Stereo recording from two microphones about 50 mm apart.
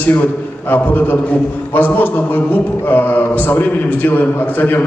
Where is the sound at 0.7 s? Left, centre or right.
Left.